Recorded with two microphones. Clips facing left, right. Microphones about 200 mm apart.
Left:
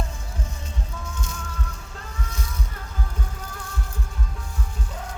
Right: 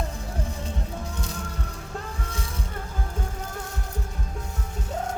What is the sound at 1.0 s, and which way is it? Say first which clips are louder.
Music: right 2 dB; 35° right (ahead or behind).